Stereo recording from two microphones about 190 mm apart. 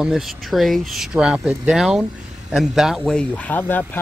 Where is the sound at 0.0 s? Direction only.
Centre (ahead or behind).